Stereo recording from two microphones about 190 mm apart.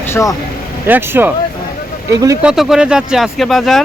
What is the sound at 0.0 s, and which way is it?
Speech, 15° left (ahead or behind).